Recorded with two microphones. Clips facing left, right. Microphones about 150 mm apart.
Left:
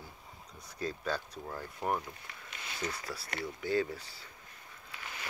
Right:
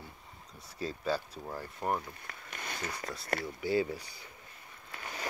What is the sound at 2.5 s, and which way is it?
Speech, 50° right (ahead or behind).